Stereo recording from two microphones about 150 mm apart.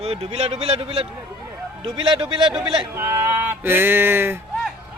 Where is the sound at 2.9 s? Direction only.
20° right (ahead or behind).